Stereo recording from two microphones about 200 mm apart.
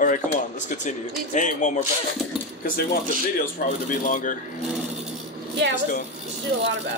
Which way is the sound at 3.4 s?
40° left (ahead or behind).